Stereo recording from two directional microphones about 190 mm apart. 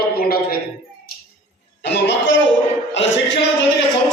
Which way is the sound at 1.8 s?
65° left (ahead or behind).